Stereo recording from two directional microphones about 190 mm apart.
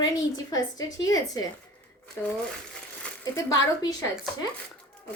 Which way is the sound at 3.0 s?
15° left (ahead or behind).